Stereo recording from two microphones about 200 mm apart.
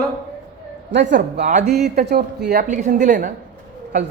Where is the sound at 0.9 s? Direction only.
60° right (ahead or behind).